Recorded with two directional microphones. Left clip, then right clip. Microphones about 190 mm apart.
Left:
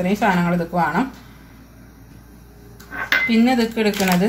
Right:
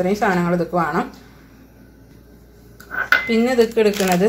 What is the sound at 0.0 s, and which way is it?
Speech, 20° right (ahead or behind).